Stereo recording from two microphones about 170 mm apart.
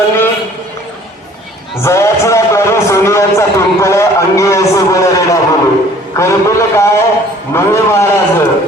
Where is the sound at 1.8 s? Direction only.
15° left (ahead or behind).